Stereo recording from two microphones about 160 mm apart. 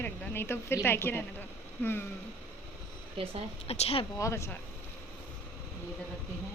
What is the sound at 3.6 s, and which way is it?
Speech, 40° left (ahead or behind).